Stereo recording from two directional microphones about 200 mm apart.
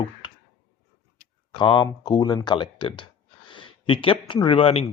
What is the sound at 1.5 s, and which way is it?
Speech, 25° left (ahead or behind).